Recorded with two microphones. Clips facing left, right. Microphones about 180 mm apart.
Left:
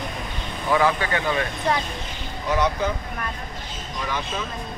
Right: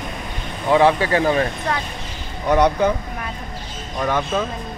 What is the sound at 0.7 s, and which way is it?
Speech, 30° right (ahead or behind).